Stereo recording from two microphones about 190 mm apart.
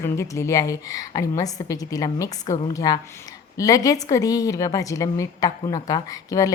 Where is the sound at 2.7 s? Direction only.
20° left (ahead or behind).